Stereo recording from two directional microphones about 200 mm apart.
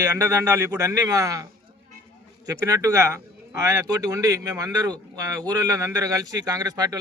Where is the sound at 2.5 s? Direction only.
15° right (ahead or behind).